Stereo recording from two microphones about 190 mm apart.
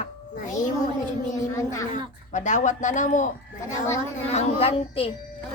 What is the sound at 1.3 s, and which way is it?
Speech, 15° left (ahead or behind).